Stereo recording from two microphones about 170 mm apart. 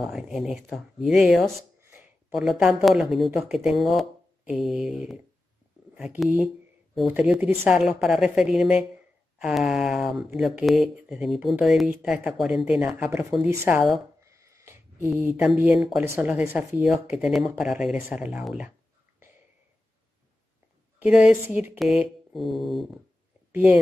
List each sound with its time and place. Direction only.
0.0 s speech: centre (ahead or behind)
1.8 s a sound: 15° right (ahead or behind)
2.6 s speech: 5° right (ahead or behind)
14.2 s a sound: 15° right (ahead or behind)
15.0 s speech: 5° right (ahead or behind)
21.0 s speech: 5° right (ahead or behind)